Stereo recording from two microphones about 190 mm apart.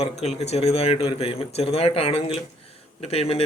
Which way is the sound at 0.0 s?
35° left (ahead or behind).